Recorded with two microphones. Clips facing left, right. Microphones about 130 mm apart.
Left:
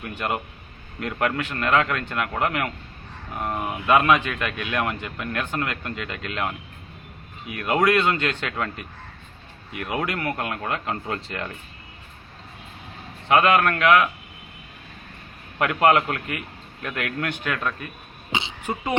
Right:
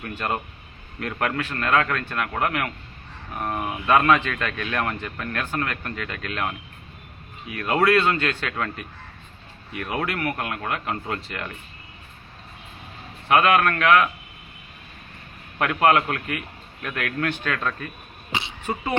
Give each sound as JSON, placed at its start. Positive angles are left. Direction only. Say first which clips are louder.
{"t": 0.1, "sound": "speech", "louder": "even", "side_deg": 10}
{"t": 2.4, "sound": "speech", "louder": "even", "side_deg": 25}
{"t": 3.3, "sound": "speech", "louder": "even", "side_deg": 10}
{"t": 7.5, "sound": "speech", "louder": "right 1 dB", "side_deg": 15}
{"t": 9.7, "sound": "speech", "louder": "even", "side_deg": 15}
{"t": 10.2, "sound": "speech", "louder": "even", "side_deg": 25}
{"t": 13.2, "sound": "speech", "louder": "even", "side_deg": 20}
{"t": 15.5, "sound": "speech", "louder": "even", "side_deg": 15}
{"t": 18.3, "sound": "throat clearing", "louder": "even", "side_deg": 20}